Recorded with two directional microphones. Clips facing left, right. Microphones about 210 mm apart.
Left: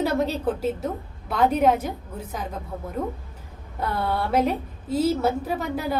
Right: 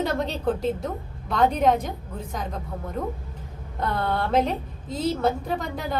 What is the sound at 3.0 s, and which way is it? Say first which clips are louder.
Speech: left 2 dB; 5° left (ahead or behind).